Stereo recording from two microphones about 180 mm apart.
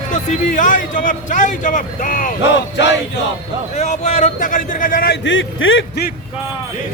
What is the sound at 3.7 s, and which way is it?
A man's voice, 40° left (ahead or behind).